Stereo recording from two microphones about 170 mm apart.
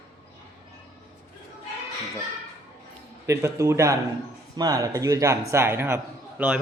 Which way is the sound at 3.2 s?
15° right (ahead or behind).